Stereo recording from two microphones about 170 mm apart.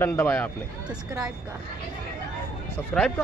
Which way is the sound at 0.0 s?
10° left (ahead or behind).